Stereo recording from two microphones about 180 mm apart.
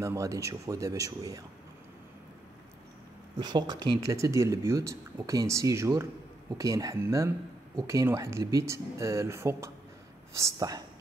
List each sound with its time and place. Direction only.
0.0 s speech: 15° right (ahead or behind)
3.3 s speech: 25° right (ahead or behind)